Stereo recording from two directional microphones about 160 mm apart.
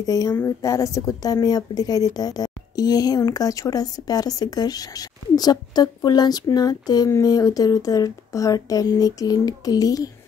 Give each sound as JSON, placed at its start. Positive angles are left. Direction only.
{"t": 0.0, "sound": "speech", "side_deg": 20}